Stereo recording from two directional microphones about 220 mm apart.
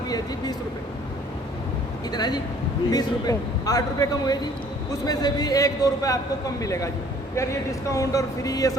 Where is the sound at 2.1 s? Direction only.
20° left (ahead or behind).